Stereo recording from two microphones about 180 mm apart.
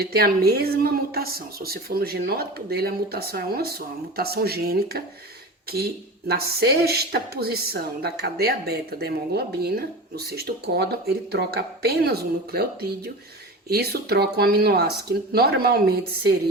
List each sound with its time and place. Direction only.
0.0 s a woman's voice: 60° right (ahead or behind)